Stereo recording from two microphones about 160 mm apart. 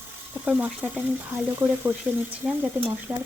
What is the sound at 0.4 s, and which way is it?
Speech, 10° right (ahead or behind).